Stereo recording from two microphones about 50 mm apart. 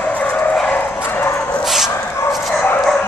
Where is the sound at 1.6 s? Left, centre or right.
Centre.